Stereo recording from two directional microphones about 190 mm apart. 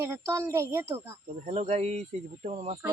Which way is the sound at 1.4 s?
35° right (ahead or behind).